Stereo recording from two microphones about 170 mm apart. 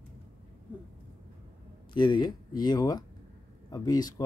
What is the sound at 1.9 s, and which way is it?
Speech, 25° left (ahead or behind).